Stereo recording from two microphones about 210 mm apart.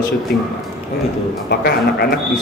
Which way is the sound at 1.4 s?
50° left (ahead or behind).